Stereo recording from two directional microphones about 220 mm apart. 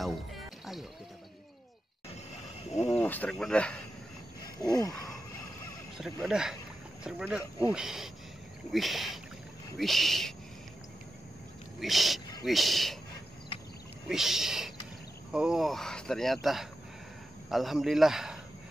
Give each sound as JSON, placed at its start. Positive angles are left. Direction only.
{"t": 0.0, "sound": "music", "side_deg": 0}
{"t": 2.9, "sound": "speech", "side_deg": 10}
{"t": 4.6, "sound": "a sound", "side_deg": 15}
{"t": 5.9, "sound": "speech", "side_deg": -5}
{"t": 11.8, "sound": "speech", "side_deg": 0}
{"t": 14.0, "sound": "speech", "side_deg": 0}